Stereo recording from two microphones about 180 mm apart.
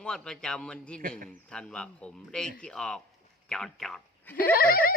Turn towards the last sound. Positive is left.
turn(degrees=55)  # may be behind; listen again after turning